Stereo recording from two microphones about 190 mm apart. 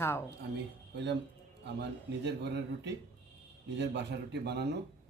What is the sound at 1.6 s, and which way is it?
A man's voice, 65° right (ahead or behind).